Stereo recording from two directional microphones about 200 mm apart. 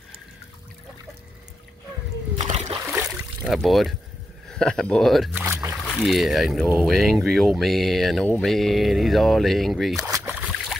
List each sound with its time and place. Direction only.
2.3 s splash: 35° right (ahead or behind)
2.9 s a sound: 5° right (ahead or behind)
4.5 s speech: 5° left (ahead or behind)
5.4 s a sound: 15° right (ahead or behind)
6.0 s speech: centre (ahead or behind)
9.9 s boat: 10° right (ahead or behind)